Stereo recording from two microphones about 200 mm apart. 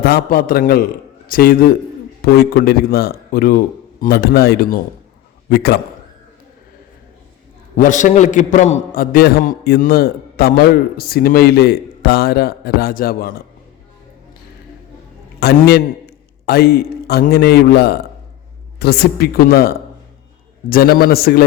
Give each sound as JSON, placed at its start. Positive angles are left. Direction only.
{"t": 0.0, "sound": "a man's voice", "side_deg": 50}
{"t": 7.8, "sound": "a man's voice", "side_deg": 40}
{"t": 15.4, "sound": "a man's voice", "side_deg": 55}